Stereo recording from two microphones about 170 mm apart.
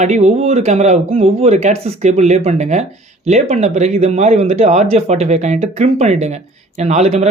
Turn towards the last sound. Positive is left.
turn(degrees=-40)  # may be behind; listen again after turning